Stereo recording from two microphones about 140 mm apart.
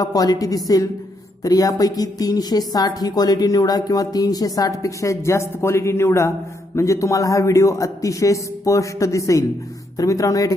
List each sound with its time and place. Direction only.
0.0 s a woman's voice: 25° left (ahead or behind)